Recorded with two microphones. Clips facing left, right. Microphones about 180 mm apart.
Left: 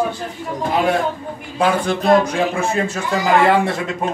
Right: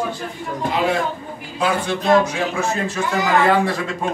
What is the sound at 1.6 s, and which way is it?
Speech, 55° left (ahead or behind).